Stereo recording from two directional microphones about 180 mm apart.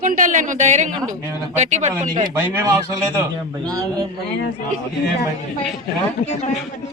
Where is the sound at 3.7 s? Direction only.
20° right (ahead or behind).